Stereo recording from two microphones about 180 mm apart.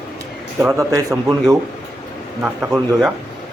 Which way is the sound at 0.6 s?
15° right (ahead or behind).